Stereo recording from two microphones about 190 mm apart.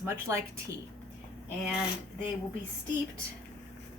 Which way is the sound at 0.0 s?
15° right (ahead or behind).